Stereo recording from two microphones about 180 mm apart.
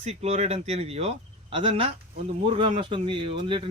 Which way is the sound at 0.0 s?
35° right (ahead or behind).